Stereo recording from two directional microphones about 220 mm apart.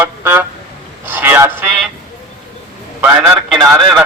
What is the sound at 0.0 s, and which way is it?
Vehicle, 10° right (ahead or behind).